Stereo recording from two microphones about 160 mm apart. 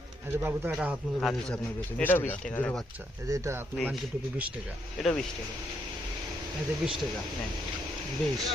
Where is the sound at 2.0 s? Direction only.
15° left (ahead or behind).